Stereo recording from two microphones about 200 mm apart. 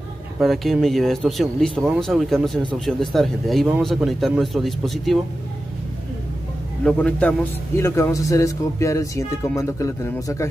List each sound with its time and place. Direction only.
0.4 s speech: centre (ahead or behind)
6.8 s a man's voice: 5° left (ahead or behind)